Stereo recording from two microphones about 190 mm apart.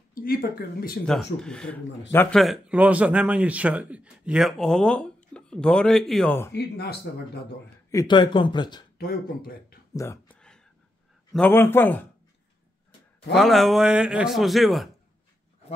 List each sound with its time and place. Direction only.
0.1 s speech: 50° left (ahead or behind)
1.0 s speech: 5° left (ahead or behind)
2.4 s speech: 5° right (ahead or behind)
6.5 s speech: 60° left (ahead or behind)
7.9 s speech: 20° left (ahead or behind)
8.9 s speech: 55° left (ahead or behind)
9.9 s speech: 15° left (ahead or behind)
11.3 s a man's voice: 10° left (ahead or behind)
13.3 s speech: centre (ahead or behind)